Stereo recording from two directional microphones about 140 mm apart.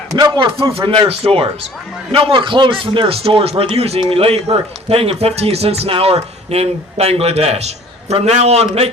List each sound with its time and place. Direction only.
0.2 s speech: 30° right (ahead or behind); by 8.9 s 45° right (ahead or behind)